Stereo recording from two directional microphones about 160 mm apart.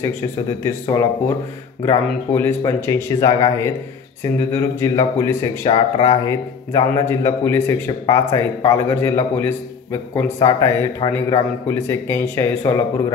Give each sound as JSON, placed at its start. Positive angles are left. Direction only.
{"t": 0.7, "sound": "speech", "side_deg": 20}
{"t": 2.3, "sound": "speech", "side_deg": 15}